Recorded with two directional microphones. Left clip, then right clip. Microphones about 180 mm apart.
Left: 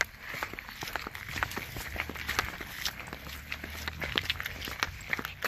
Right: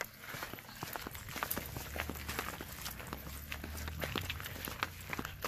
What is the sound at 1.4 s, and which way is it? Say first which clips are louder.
Walk: left 7 dB; 75° left (ahead or behind).